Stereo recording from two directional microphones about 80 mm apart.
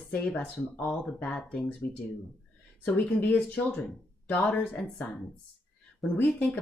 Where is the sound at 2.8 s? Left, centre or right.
Left.